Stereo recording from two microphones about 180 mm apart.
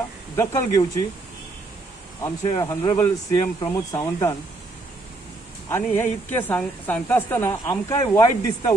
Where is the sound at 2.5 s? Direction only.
20° left (ahead or behind).